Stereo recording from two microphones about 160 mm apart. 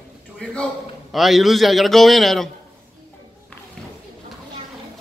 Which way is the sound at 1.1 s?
Centre (ahead or behind).